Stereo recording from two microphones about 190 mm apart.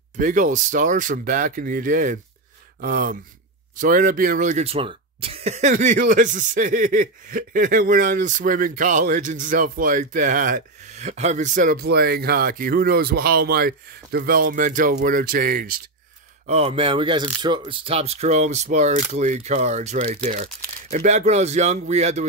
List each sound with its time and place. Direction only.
0.2 s speech: 40° right (ahead or behind)
16.4 s speech: 30° right (ahead or behind)